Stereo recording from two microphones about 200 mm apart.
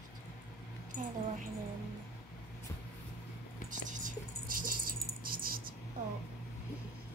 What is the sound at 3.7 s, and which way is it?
Whispering, 40° right (ahead or behind).